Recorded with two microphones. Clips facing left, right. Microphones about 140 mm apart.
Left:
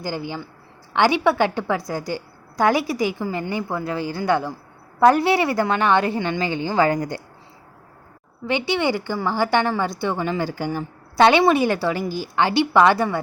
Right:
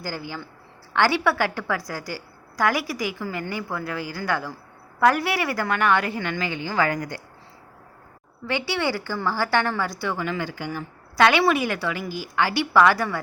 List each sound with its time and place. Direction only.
0.0 s a woman's voice: 20° left (ahead or behind)
8.4 s a woman's voice: 20° left (ahead or behind)